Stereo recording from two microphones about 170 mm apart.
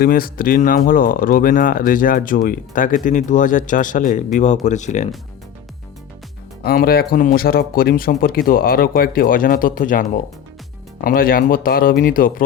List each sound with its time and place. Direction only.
0.0 s speech: 60° left (ahead or behind)
6.6 s speech: 60° left (ahead or behind)